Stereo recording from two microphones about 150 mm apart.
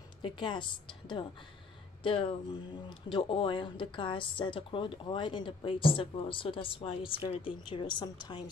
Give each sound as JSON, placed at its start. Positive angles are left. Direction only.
{"t": 0.2, "sound": "a woman's voice", "side_deg": 30}